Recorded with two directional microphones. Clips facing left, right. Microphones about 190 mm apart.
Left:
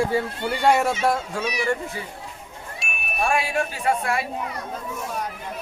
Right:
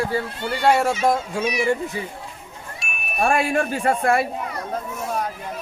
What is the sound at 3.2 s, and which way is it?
Speech, 50° right (ahead or behind).